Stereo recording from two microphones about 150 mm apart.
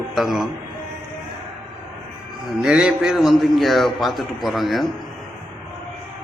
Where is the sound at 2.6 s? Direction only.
5° right (ahead or behind).